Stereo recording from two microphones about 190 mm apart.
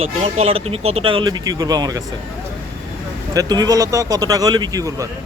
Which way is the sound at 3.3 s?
20° right (ahead or behind).